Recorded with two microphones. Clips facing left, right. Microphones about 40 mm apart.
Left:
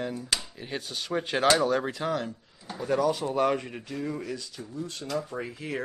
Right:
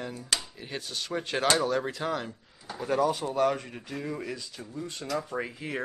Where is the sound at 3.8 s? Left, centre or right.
Centre.